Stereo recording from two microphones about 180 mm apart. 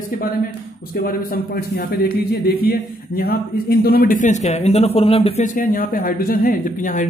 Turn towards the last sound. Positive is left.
turn(degrees=50)  # may be behind; listen again after turning